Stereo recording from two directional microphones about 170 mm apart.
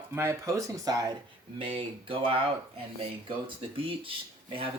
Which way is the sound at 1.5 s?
30° right (ahead or behind).